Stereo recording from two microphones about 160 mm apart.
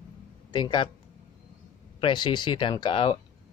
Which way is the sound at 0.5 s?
30° left (ahead or behind).